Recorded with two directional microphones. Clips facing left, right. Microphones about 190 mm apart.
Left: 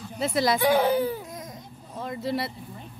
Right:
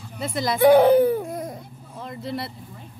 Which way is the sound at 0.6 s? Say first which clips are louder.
Right 12 dB; 55° right (ahead or behind).